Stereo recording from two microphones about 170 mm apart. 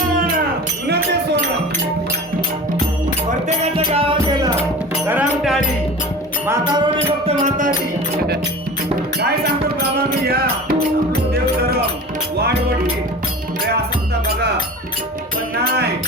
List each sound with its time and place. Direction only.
3.8 s music: 30° right (ahead or behind)
5.0 s music: 10° right (ahead or behind)
6.7 s music: 25° right (ahead or behind)
10.2 s music: 65° right (ahead or behind)